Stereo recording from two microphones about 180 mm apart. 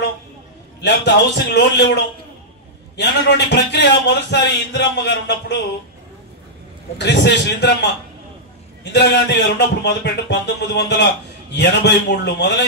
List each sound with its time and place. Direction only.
0.7 s speech: 70° left (ahead or behind)
7.0 s speech: 70° left (ahead or behind)
8.9 s speech: 75° left (ahead or behind)